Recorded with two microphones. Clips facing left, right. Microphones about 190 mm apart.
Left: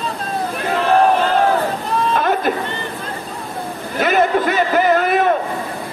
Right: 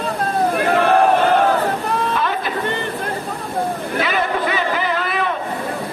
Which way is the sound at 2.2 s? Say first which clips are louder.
Left 4 dB; 50° left (ahead or behind).